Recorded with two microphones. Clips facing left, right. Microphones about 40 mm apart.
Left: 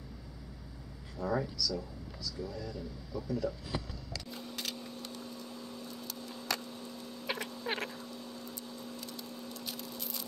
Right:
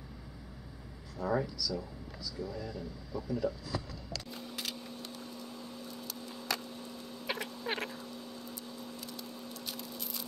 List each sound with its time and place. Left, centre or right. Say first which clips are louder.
1.2 s speech: right 1 dB; centre
2.5 s speech: right 1 dB; right
3.1 s speech: right 1 dB; centre
4.3 s a sound: left 2 dB; centre